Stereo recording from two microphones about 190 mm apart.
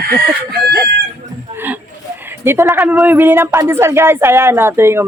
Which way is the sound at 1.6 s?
10° right (ahead or behind).